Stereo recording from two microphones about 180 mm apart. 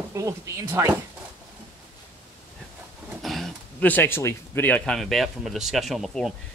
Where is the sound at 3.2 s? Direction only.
Centre (ahead or behind).